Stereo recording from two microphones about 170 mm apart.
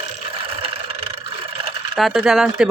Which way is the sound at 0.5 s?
35° right (ahead or behind).